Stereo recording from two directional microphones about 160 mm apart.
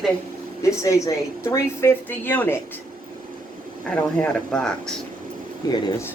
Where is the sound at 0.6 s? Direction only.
20° left (ahead or behind).